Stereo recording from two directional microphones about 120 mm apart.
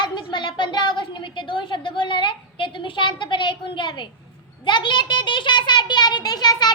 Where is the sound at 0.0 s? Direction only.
40° left (ahead or behind).